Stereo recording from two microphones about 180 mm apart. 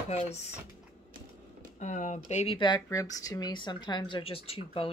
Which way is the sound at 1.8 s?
40° left (ahead or behind).